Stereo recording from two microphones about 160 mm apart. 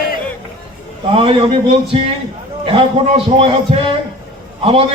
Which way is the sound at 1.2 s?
35° right (ahead or behind).